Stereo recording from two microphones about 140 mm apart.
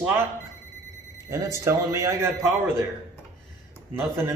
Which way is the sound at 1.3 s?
20° right (ahead or behind).